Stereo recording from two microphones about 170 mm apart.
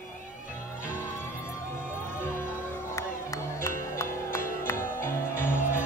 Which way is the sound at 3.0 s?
15° left (ahead or behind).